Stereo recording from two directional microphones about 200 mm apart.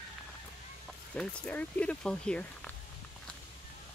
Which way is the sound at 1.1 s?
5° left (ahead or behind).